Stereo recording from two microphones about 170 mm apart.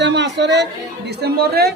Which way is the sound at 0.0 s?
90° right.